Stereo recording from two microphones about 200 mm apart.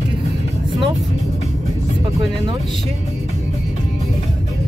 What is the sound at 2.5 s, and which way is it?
Music, 25° right (ahead or behind).